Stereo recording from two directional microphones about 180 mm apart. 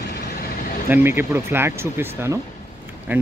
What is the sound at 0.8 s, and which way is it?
Speech, 10° right (ahead or behind).